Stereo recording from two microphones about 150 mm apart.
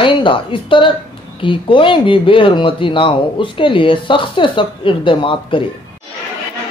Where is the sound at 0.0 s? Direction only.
35° left (ahead or behind).